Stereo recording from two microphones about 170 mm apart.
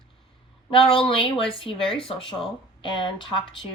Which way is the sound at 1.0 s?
30° left (ahead or behind).